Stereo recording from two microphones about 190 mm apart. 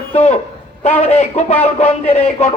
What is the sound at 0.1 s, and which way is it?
A man's voice, 35° left (ahead or behind).